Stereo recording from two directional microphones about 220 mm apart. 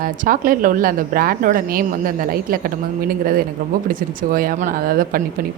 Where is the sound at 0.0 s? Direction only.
40° right (ahead or behind).